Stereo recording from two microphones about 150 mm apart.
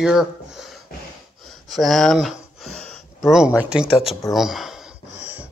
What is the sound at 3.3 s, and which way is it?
Speech, 5° right (ahead or behind).